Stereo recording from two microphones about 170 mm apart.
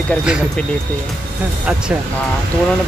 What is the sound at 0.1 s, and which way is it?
Speech, 5° right (ahead or behind).